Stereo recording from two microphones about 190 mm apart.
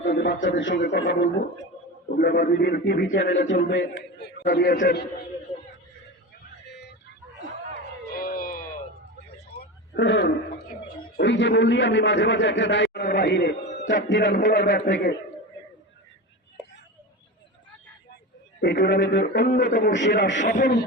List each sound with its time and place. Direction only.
0.0 s a man's voice: 65° left (ahead or behind)
2.1 s a man's voice: 50° left (ahead or behind)
6.7 s vehicle: 60° left (ahead or behind)
8.1 s a sound: 50° left (ahead or behind)
9.5 s a sound: 60° left (ahead or behind)
11.2 s a man's voice: 70° left (ahead or behind)
14.5 s speech: 60° left (ahead or behind)
18.6 s a man's voice: 60° left (ahead or behind)
19.3 s a man's voice: 55° left (ahead or behind)
19.9 s speech: 65° left (ahead or behind)
20.4 s a man's voice: 40° left (ahead or behind)